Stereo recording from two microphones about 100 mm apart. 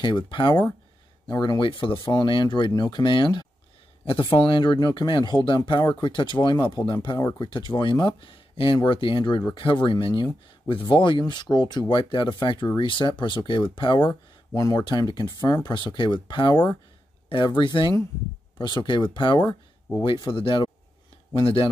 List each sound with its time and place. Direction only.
0.0 s speech: 50° left (ahead or behind)
14.5 s speech: 35° left (ahead or behind); by 20.7 s 55° left (ahead or behind)